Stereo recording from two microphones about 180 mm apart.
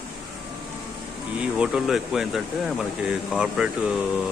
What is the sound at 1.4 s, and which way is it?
Speech, 5° right (ahead or behind).